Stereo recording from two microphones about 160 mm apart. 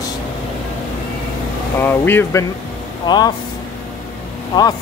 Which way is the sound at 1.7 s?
15° left (ahead or behind).